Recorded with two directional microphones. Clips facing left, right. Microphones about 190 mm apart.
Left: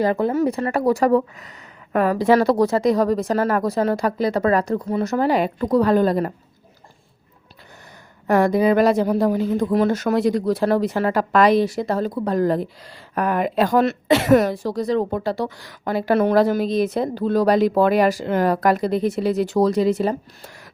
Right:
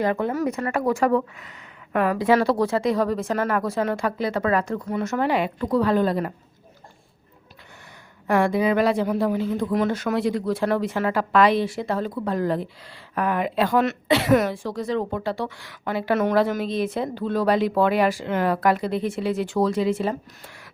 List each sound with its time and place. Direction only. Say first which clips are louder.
0.0 s a woman's voice: left 4 dB; 35° left (ahead or behind)
8.3 s a woman's voice: left 4 dB; 40° left (ahead or behind)